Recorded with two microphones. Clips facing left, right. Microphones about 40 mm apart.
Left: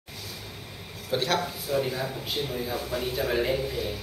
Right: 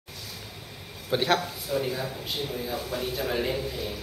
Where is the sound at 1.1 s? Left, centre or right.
Centre.